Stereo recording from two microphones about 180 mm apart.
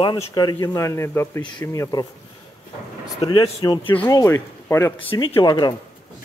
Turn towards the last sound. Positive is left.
turn(degrees=25)  # may be behind; listen again after turning